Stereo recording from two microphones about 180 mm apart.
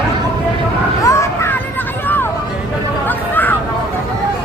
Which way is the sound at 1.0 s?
15° left (ahead or behind).